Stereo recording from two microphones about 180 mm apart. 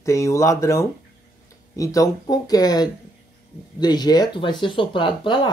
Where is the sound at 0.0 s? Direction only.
15° left (ahead or behind).